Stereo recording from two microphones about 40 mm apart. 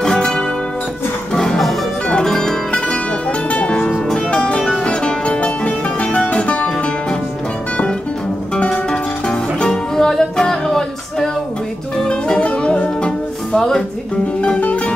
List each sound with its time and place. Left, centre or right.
0.0 s music: centre
3.4 s music: left
9.7 s music: centre
12.1 s music: left
13.5 s music: centre